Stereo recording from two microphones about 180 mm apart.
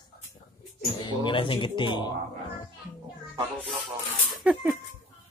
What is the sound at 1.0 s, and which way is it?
Speech, 25° left (ahead or behind).